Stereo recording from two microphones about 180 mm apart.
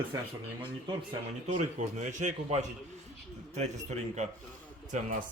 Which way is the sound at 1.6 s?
40° right (ahead or behind).